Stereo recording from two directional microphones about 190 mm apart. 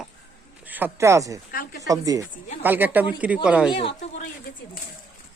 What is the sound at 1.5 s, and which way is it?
Speech, 50° left (ahead or behind).